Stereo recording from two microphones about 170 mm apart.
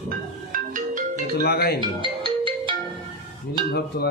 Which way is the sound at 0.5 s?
50° right (ahead or behind).